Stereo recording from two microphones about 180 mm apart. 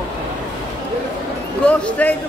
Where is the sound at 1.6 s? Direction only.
5° left (ahead or behind).